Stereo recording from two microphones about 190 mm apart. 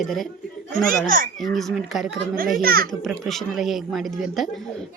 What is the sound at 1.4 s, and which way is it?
Speech, centre (ahead or behind).